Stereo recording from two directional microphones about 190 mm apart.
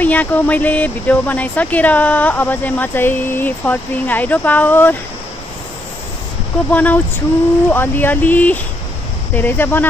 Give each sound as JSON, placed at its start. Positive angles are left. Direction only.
{"t": 0.0, "sound": "speech", "side_deg": 10}
{"t": 6.7, "sound": "speech", "side_deg": 10}